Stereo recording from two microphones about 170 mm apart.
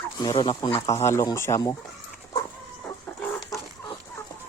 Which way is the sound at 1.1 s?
15° left (ahead or behind).